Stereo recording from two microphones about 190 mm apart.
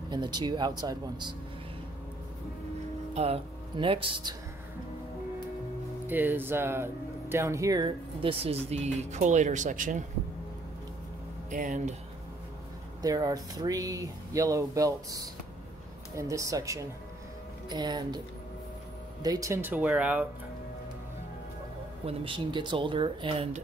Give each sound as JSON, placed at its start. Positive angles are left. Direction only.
{"t": 0.1, "sound": "speech", "side_deg": -25}
{"t": 3.2, "sound": "speech", "side_deg": -30}
{"t": 6.0, "sound": "speech", "side_deg": -10}
{"t": 11.5, "sound": "speech", "side_deg": -40}
{"t": 13.0, "sound": "speech", "side_deg": -20}
{"t": 16.2, "sound": "speech", "side_deg": -15}
{"t": 19.2, "sound": "speech", "side_deg": -20}
{"t": 22.0, "sound": "speech", "side_deg": -25}